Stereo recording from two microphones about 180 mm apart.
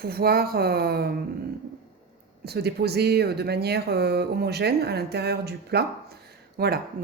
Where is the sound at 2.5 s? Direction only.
65° right (ahead or behind).